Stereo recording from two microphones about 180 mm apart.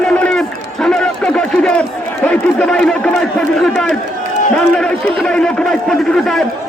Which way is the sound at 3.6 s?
5° left (ahead or behind).